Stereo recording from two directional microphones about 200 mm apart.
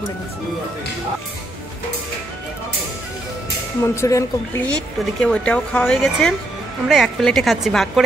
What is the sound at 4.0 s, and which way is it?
A woman's voice, 15° left (ahead or behind).